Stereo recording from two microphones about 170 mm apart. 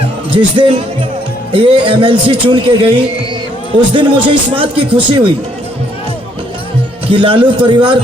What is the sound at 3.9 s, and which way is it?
Speech, 30° right (ahead or behind).